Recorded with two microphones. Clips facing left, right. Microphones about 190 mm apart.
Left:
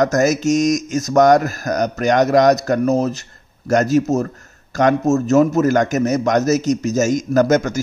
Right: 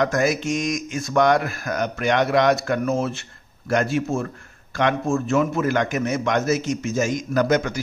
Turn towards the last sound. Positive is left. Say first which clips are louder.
# left 5 dB
turn(degrees=45)  # may be behind; listen again after turning